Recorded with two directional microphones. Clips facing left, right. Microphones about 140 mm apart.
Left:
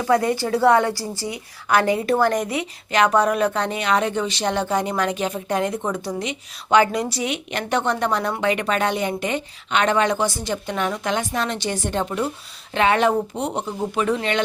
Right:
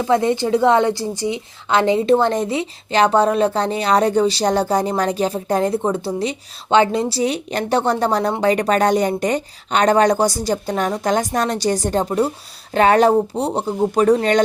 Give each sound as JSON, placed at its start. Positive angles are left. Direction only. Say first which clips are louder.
{"t": 0.0, "sound": "a woman's voice", "louder": "right 3 dB", "side_deg": -25}